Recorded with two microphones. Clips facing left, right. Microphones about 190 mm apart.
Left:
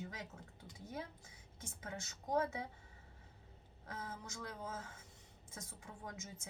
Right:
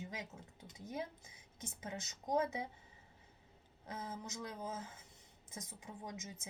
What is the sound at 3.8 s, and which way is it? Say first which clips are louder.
Speech: right 2 dB; 20° right (ahead or behind).